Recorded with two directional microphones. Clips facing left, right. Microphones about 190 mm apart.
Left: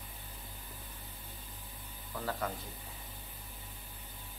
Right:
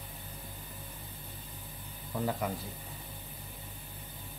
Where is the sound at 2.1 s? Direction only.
15° right (ahead or behind).